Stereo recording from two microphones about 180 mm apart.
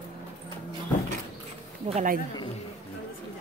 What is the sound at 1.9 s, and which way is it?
Speech, 40° right (ahead or behind).